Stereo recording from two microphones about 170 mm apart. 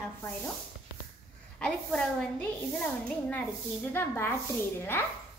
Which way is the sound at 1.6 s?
5° left (ahead or behind).